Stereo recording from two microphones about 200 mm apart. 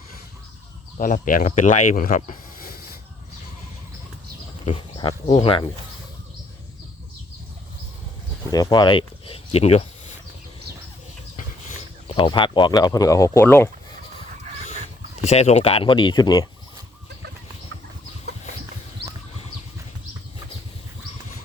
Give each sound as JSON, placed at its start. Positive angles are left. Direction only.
{"t": 0.9, "sound": "speech", "side_deg": 40}
{"t": 4.6, "sound": "speech", "side_deg": 25}
{"t": 8.4, "sound": "speech", "side_deg": 20}
{"t": 12.0, "sound": "speech", "side_deg": 25}
{"t": 15.2, "sound": "speech", "side_deg": 35}
{"t": 18.3, "sound": "chicken", "side_deg": -55}